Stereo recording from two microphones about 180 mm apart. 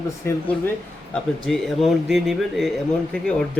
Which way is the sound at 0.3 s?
10° left (ahead or behind).